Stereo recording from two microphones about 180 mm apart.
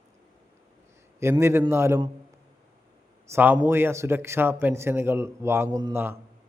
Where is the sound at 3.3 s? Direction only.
10° right (ahead or behind).